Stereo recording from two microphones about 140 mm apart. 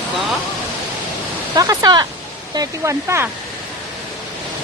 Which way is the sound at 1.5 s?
25° right (ahead or behind).